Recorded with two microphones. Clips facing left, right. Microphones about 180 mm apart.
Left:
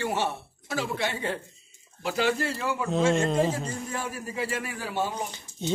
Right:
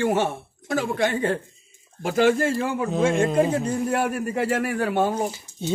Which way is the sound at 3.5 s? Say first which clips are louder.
Right 10 dB; 60° right (ahead or behind).